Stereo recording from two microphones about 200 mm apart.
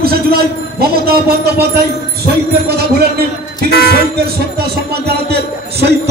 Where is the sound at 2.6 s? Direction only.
50° right (ahead or behind).